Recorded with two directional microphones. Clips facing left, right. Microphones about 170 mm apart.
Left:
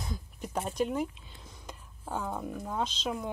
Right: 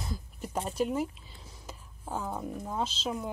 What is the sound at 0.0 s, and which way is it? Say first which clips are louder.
Speech: even; 5° right (ahead or behind).